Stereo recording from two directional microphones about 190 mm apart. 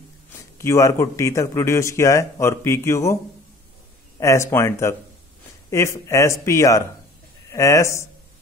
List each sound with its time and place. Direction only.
0.3 s speech: 15° left (ahead or behind)
4.2 s speech: 15° left (ahead or behind)